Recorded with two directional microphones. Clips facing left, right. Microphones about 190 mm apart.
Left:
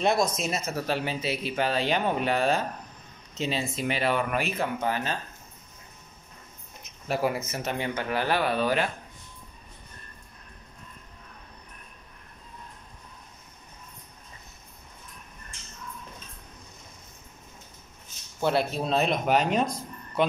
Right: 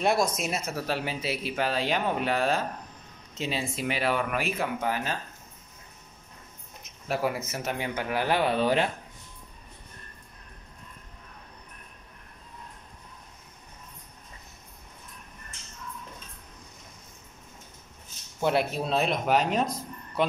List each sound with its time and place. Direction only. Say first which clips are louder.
0.0 s speech: left 1 dB; 10° right (ahead or behind)
7.1 s speech: left 1 dB; centre (ahead or behind); by 8.9 s 25° right (ahead or behind)
18.4 s speech: even; 15° right (ahead or behind)